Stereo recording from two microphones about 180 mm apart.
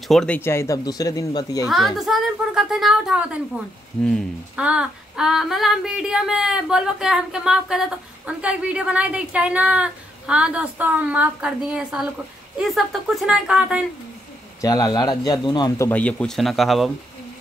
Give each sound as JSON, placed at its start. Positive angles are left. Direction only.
{"t": 0.1, "sound": "speech", "side_deg": 5}
{"t": 1.7, "sound": "a woman's voice", "side_deg": 0}
{"t": 14.6, "sound": "speech", "side_deg": 20}
{"t": 15.9, "sound": "a woman's voice", "side_deg": 5}